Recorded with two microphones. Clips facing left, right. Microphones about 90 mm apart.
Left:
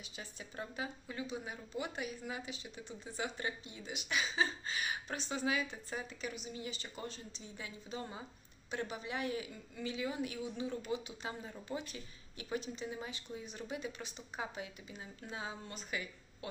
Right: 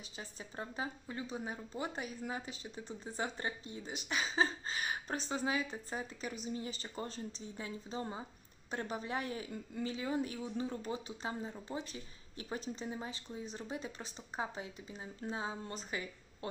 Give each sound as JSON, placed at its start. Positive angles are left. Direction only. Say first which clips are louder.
{"t": 0.2, "sound": "speech", "louder": "right 1 dB", "side_deg": -35}